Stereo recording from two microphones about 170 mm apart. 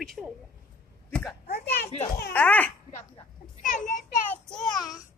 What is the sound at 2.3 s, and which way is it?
Speech, 10° left (ahead or behind).